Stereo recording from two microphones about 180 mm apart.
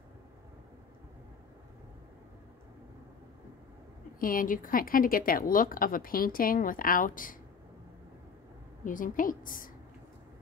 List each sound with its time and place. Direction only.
4.2 s speech: 50° left (ahead or behind)
8.8 s speech: 50° left (ahead or behind)